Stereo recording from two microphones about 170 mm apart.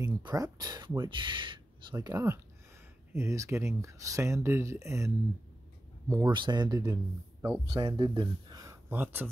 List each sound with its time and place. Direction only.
0.0 s speech: 20° right (ahead or behind)